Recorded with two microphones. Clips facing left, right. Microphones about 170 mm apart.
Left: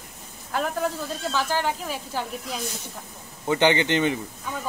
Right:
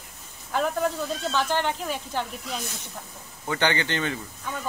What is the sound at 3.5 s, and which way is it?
Speech, 20° left (ahead or behind).